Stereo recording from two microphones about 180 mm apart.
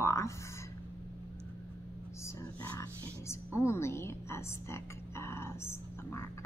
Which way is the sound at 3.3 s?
15° left (ahead or behind).